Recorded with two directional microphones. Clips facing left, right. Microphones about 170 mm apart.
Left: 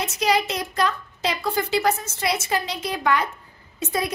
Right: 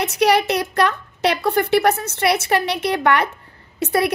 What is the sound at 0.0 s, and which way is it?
A woman's voice, 65° right (ahead or behind).